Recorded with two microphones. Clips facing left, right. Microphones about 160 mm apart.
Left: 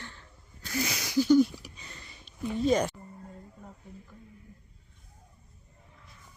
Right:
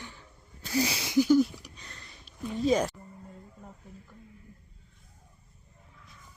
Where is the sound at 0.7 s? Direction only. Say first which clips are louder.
Right 3 dB; 30° right (ahead or behind).